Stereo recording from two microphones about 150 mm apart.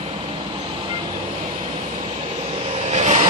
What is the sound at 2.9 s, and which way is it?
Vehicle, 50° right (ahead or behind).